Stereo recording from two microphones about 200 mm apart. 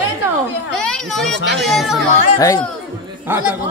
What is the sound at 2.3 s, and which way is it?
Speech, 15° left (ahead or behind).